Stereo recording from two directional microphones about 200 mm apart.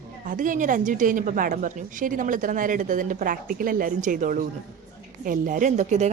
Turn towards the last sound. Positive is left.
turn(degrees=-35)  # may be behind; listen again after turning